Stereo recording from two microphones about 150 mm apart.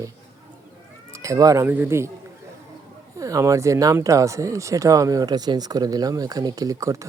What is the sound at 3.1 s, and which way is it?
Speech, 20° right (ahead or behind).